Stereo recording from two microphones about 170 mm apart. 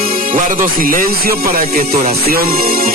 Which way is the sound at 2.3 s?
65° right (ahead or behind).